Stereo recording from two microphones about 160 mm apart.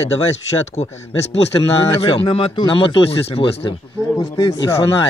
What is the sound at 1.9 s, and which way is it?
Speech, 35° left (ahead or behind).